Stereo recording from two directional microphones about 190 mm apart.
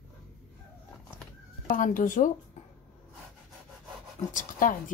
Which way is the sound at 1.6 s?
45° left (ahead or behind).